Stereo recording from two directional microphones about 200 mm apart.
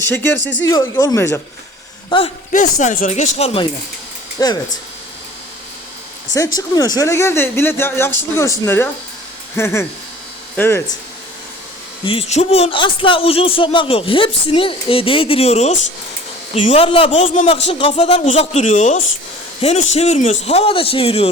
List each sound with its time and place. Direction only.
0.0 s speech: 10° left (ahead or behind)
0.3 s speech: 60° left (ahead or behind)
0.6 s speech: 15° left (ahead or behind)
2.0 s speech: 25° left (ahead or behind)
2.5 s a man's voice: 40° left (ahead or behind)
4.4 s a man's voice: 20° left (ahead or behind)
6.3 s speech: 15° left (ahead or behind)
12.0 s a man's voice: 30° left (ahead or behind)